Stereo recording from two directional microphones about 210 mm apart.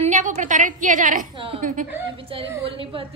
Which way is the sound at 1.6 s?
40° right (ahead or behind).